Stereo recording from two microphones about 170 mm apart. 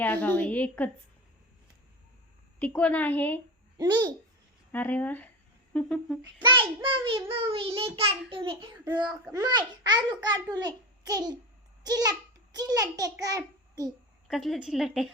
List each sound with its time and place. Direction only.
0.0 s a woman's voice: 10° left (ahead or behind)
2.6 s a woman's voice: 10° left (ahead or behind)
3.8 s a child's voice: 25° right (ahead or behind)
4.7 s a woman's voice: 10° left (ahead or behind)
6.4 s a child's voice: 30° right (ahead or behind)
14.3 s a woman's voice: centre (ahead or behind)